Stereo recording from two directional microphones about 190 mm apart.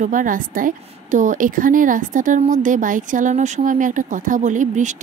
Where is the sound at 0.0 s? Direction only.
45° right (ahead or behind).